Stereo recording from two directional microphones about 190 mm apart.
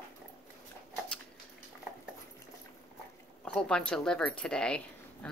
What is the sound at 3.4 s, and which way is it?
Speech, 5° left (ahead or behind).